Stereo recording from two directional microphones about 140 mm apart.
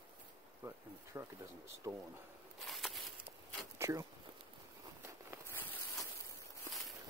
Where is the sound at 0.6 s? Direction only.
15° right (ahead or behind).